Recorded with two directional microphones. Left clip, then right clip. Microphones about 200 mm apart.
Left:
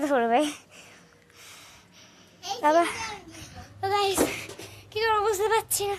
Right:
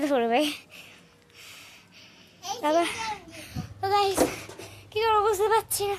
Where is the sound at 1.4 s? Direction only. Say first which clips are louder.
Right 2 dB; 10° right (ahead or behind).